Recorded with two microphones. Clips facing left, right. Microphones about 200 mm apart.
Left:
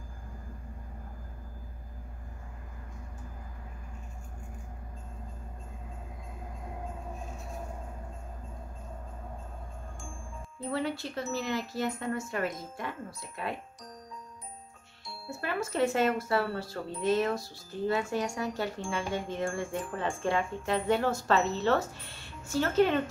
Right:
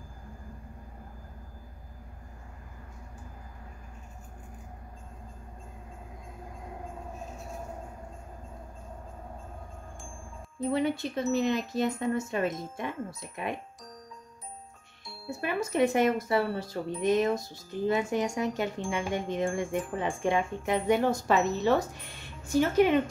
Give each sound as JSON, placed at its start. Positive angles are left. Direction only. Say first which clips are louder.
{"t": 10.6, "sound": "speech", "louder": "right 5 dB", "side_deg": -20}
{"t": 15.4, "sound": "speech", "louder": "right 3 dB", "side_deg": -15}